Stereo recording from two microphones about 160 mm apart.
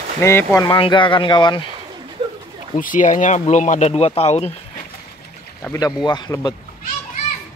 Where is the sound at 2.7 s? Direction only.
55° left (ahead or behind); by 4.5 s 40° left (ahead or behind).